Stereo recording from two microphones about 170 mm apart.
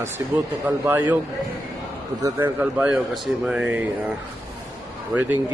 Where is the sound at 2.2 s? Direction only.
20° right (ahead or behind).